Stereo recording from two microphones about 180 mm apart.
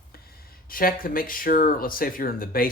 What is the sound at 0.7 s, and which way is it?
Speech, 50° left (ahead or behind).